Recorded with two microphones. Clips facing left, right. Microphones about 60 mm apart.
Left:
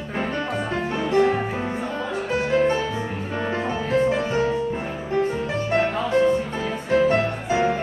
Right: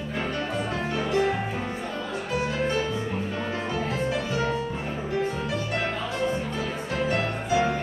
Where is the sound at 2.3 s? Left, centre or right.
Left.